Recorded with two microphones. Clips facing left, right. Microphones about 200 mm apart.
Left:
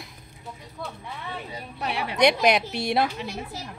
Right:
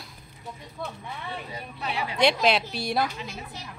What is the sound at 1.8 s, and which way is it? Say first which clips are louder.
Speech: left 2 dB; 60° left (ahead or behind).